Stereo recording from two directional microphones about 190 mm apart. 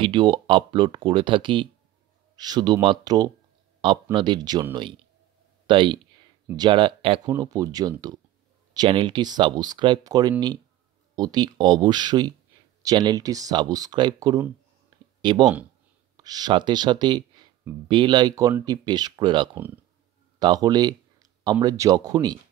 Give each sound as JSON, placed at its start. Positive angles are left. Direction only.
{"t": 0.0, "sound": "speech", "side_deg": -25}
{"t": 5.7, "sound": "speech", "side_deg": -25}
{"t": 14.9, "sound": "a sound", "side_deg": -25}
{"t": 15.2, "sound": "speech", "side_deg": -20}
{"t": 19.5, "sound": "speech", "side_deg": -10}
{"t": 20.3, "sound": "speech", "side_deg": -20}